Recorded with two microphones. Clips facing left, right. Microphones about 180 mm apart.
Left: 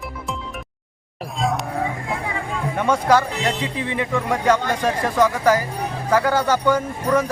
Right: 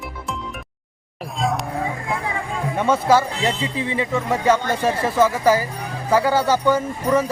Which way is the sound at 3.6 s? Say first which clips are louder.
Right 1 dB; 60° left (ahead or behind).